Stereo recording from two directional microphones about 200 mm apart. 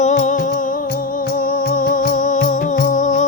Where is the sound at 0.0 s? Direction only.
40° left (ahead or behind).